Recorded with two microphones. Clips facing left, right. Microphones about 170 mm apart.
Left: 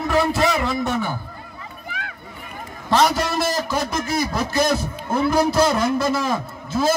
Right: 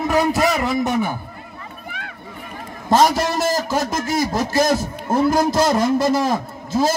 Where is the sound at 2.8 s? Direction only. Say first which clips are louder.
Right 3 dB; 45° right (ahead or behind).